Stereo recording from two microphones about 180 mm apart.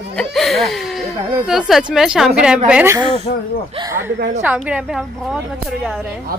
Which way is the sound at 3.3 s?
40° left (ahead or behind).